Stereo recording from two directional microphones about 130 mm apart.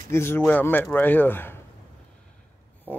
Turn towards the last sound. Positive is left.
turn(degrees=15)  # may be behind; listen again after turning